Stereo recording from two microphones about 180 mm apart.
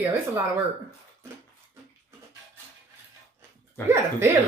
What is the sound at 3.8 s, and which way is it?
Speech, 15° right (ahead or behind).